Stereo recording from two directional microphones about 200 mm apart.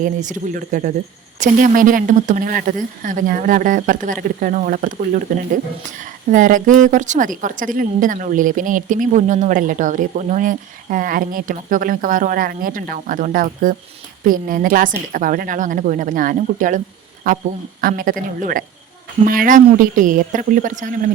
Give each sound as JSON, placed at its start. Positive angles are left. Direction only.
{"t": 0.0, "sound": "a woman's voice", "side_deg": -40}